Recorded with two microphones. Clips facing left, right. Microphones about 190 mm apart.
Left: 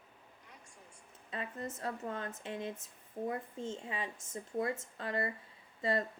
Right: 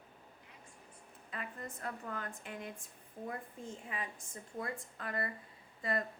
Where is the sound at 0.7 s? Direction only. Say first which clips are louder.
Right 1 dB; 80° left.